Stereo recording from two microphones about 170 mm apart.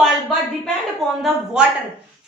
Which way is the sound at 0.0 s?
Centre (ahead or behind).